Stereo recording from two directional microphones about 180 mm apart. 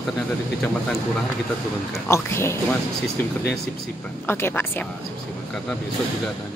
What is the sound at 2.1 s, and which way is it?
Speech, 15° left (ahead or behind).